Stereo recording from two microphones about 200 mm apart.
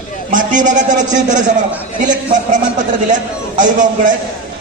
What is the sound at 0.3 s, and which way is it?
A man's voice, 40° right (ahead or behind).